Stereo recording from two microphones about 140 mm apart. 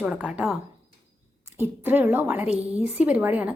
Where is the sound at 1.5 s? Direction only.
15° right (ahead or behind).